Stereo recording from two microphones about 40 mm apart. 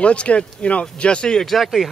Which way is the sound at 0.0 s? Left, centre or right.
Left.